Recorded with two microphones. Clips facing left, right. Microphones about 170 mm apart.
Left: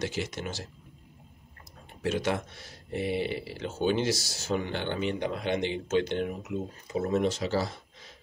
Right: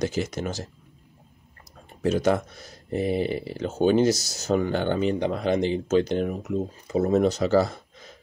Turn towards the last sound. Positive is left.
turn(degrees=-45)  # may be behind; listen again after turning